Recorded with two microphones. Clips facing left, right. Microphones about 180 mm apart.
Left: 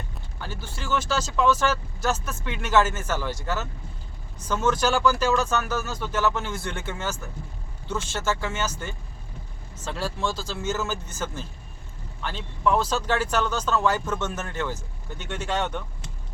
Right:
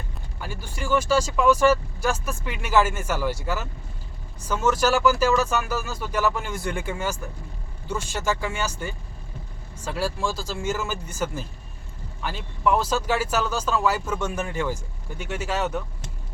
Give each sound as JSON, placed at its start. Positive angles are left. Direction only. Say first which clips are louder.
{"t": 0.3, "sound": "speech", "louder": "right 2 dB", "side_deg": -10}